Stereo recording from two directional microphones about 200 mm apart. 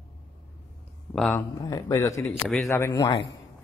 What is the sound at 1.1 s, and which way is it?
Speech, 5° left (ahead or behind).